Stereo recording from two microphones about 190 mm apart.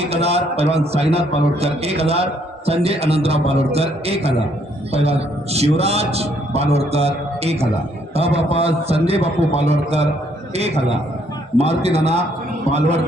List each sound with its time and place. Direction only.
0.0 s a man's voice: 30° right (ahead or behind)
11.5 s a man's voice: 35° right (ahead or behind)